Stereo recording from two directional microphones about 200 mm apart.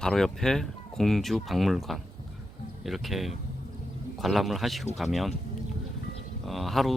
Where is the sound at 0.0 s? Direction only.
Centre (ahead or behind).